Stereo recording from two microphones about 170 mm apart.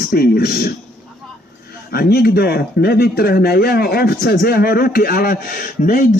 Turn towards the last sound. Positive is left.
turn(degrees=55)  # may be behind; listen again after turning